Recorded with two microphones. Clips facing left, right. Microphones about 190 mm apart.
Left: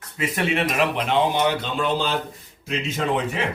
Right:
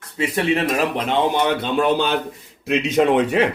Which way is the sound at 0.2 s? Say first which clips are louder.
Right 4 dB; 30° right (ahead or behind).